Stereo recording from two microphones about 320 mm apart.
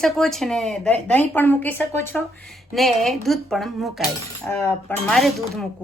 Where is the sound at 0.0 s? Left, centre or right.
Centre.